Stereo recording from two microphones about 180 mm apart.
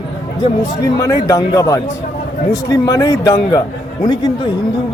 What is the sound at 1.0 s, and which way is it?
Speech, 20° left (ahead or behind).